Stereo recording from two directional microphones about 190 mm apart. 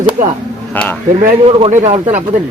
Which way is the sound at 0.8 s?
10° left (ahead or behind).